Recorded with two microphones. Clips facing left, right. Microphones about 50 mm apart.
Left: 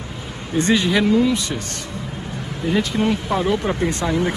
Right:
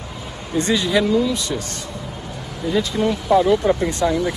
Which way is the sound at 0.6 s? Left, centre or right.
Left.